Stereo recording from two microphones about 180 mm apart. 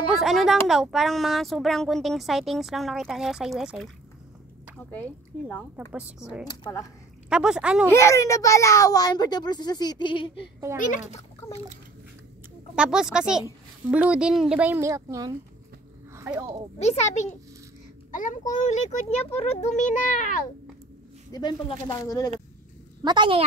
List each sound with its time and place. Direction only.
0.2 s speech: centre (ahead or behind)
5.5 s a woman's voice: 10° left (ahead or behind)
5.9 s a woman's voice: 5° right (ahead or behind)
6.4 s a child's voice: 20° left (ahead or behind)
7.2 s speech: 5° right (ahead or behind)
7.9 s a child's voice: 15° left (ahead or behind)
10.8 s a child's voice: 40° left (ahead or behind)
12.7 s a woman's voice: 5° right (ahead or behind)
16.8 s a child's voice: 40° left (ahead or behind)
21.3 s a child's voice: 25° left (ahead or behind)
23.0 s a woman's voice: 25° right (ahead or behind)